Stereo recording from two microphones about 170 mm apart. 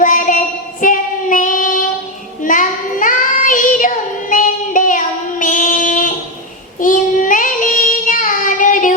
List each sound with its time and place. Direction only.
0.0 s child singing: 50° left (ahead or behind)